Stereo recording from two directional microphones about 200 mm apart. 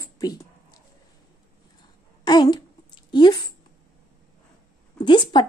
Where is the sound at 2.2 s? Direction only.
20° left (ahead or behind).